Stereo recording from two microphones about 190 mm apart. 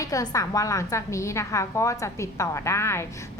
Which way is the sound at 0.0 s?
20° left (ahead or behind).